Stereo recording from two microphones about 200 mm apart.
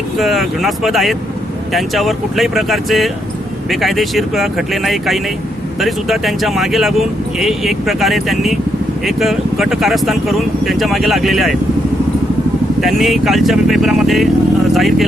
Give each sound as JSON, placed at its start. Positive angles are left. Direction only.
{"t": 0.2, "sound": "speech", "side_deg": 0}
{"t": 12.8, "sound": "speech", "side_deg": 0}